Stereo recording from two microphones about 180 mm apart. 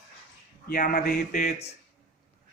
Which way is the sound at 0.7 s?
50° left (ahead or behind).